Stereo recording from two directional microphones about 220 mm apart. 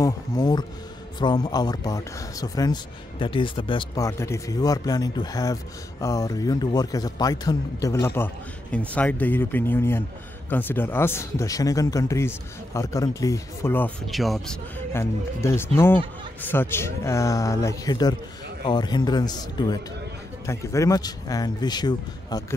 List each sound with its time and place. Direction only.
0.0 s speech: 15° left (ahead or behind); by 14.6 s centre (ahead or behind)
14.9 s speech: 10° left (ahead or behind)